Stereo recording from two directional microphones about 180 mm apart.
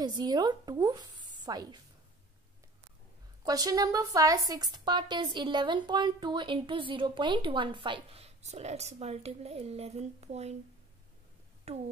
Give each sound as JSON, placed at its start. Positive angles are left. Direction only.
{"t": 0.0, "sound": "a woman's voice", "side_deg": -25}
{"t": 3.4, "sound": "a woman's voice", "side_deg": -20}
{"t": 11.7, "sound": "speech", "side_deg": -35}